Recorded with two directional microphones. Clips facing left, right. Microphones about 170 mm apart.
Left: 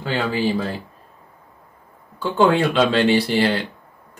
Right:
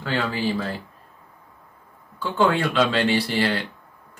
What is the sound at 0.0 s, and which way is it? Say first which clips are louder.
Speech: left 3 dB; 20° left (ahead or behind).